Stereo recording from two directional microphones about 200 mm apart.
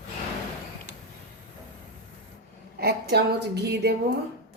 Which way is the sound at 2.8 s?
55° right (ahead or behind).